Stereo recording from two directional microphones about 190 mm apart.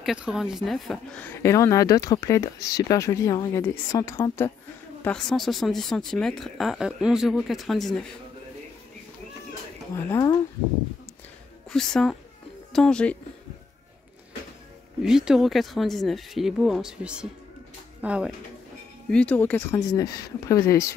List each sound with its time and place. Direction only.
0.0 s a woman's voice: 5° right (ahead or behind); by 4.5 s 15° left (ahead or behind)
5.0 s speech: 5° left (ahead or behind)
9.9 s speech: 20° left (ahead or behind)
11.7 s speech: 5° left (ahead or behind)
15.0 s speech: centre (ahead or behind)
19.0 s a woman's voice: 5° left (ahead or behind)